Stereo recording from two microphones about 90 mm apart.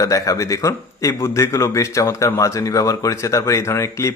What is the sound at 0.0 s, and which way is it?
A man's voice, 40° left (ahead or behind).